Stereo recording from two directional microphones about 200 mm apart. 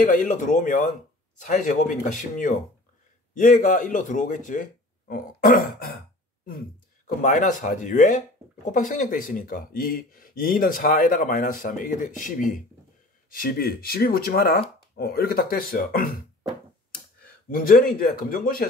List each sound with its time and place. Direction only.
0.0 s a man's voice: 40° left (ahead or behind)
7.2 s a man's voice: 40° left (ahead or behind)
17.6 s speech: 45° left (ahead or behind)